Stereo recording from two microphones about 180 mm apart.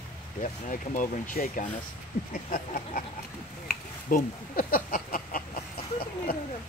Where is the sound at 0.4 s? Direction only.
45° left (ahead or behind).